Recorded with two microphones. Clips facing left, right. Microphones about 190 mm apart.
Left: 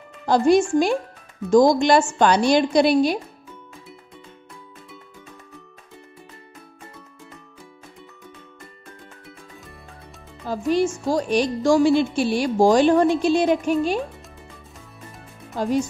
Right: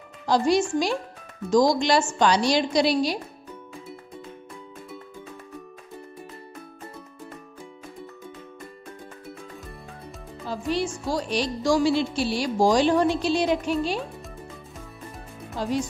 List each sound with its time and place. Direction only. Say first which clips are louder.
0.3 s speech: left 5 dB; 50° left (ahead or behind)
10.7 s speech: left 6 dB; 45° left (ahead or behind)
15.5 s speech: left 5 dB; 50° left (ahead or behind)